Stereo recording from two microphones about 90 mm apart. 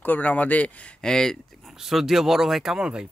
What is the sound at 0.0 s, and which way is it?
Speech, 20° left (ahead or behind).